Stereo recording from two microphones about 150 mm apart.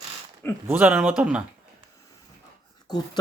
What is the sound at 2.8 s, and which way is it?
Speech, 25° left (ahead or behind).